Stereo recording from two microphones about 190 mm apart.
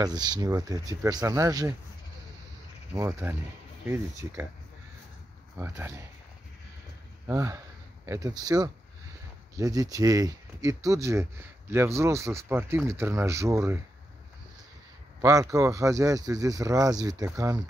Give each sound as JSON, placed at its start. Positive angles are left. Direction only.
{"t": 0.0, "sound": "speech", "side_deg": -20}
{"t": 2.9, "sound": "speech", "side_deg": -15}
{"t": 5.6, "sound": "speech", "side_deg": -10}
{"t": 7.2, "sound": "speech", "side_deg": -15}
{"t": 15.2, "sound": "speech", "side_deg": -15}